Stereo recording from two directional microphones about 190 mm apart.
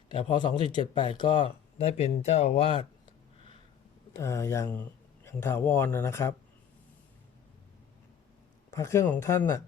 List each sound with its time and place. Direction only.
0.1 s speech: 25° left (ahead or behind)
4.2 s speech: 15° left (ahead or behind)
8.7 s speech: 15° left (ahead or behind)